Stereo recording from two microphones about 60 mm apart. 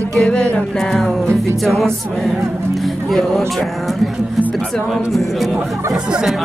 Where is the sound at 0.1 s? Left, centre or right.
Centre.